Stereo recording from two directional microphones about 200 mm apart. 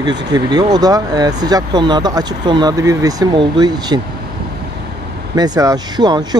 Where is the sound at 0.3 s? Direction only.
20° right (ahead or behind).